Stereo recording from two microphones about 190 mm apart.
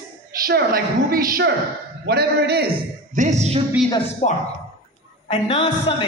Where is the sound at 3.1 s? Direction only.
40° right (ahead or behind).